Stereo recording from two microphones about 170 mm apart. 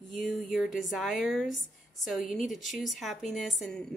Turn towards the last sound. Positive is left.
turn(degrees=5)  # may be behind; listen again after turning